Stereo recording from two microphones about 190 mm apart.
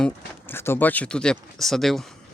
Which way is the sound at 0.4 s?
10° left (ahead or behind).